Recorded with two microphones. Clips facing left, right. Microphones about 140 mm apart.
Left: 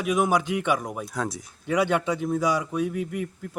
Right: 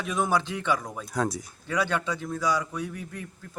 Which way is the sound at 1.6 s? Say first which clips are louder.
Left 5 dB; 20° left (ahead or behind).